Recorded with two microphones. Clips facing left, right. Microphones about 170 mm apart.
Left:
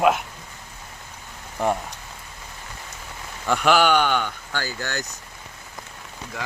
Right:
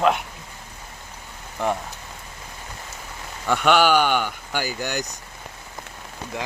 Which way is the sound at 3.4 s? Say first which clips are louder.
Right 1 dB; centre (ahead or behind).